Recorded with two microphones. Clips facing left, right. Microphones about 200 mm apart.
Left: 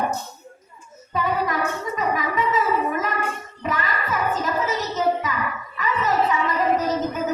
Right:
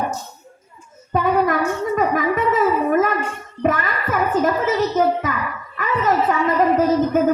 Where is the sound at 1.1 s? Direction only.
55° right (ahead or behind).